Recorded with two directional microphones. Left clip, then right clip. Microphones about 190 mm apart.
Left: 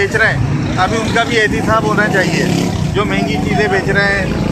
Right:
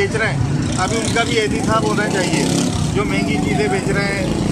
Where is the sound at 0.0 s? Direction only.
15° left (ahead or behind).